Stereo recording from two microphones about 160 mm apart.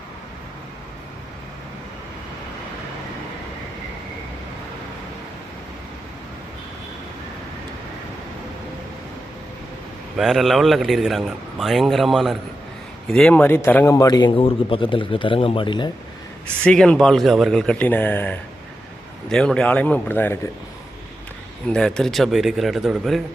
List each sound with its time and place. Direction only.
10.2 s a man's voice: centre (ahead or behind); by 15.9 s 30° left (ahead or behind)
16.6 s a man's voice: 5° left (ahead or behind)
21.7 s a man's voice: 5° left (ahead or behind)